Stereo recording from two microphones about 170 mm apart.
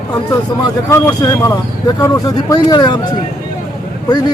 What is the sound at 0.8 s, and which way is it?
Speech, 15° left (ahead or behind).